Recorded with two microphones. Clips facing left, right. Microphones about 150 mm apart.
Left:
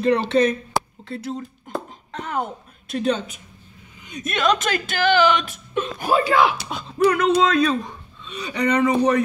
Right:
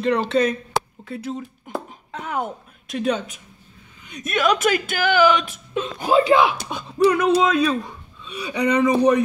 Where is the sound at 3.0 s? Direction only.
5° right (ahead or behind).